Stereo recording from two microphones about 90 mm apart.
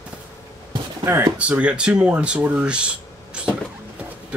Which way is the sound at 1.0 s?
25° right (ahead or behind).